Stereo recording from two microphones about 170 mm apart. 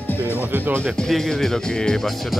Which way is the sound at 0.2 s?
10° right (ahead or behind).